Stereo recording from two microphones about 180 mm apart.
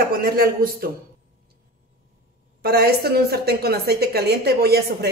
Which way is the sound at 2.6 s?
60° right (ahead or behind).